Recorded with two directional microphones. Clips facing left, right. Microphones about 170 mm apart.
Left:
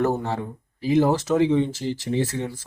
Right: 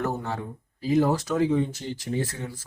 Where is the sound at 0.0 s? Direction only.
30° left (ahead or behind).